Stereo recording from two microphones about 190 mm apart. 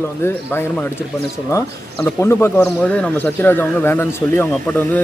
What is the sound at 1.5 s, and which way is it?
Speech, 15° left (ahead or behind).